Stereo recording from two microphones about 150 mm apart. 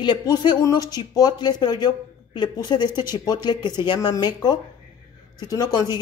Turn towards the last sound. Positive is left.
turn(degrees=25)  # may be behind; listen again after turning